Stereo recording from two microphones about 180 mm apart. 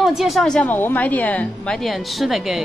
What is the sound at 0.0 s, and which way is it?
A woman's voice, centre (ahead or behind).